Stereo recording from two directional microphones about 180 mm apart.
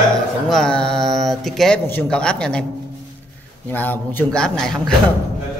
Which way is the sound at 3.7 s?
10° left (ahead or behind).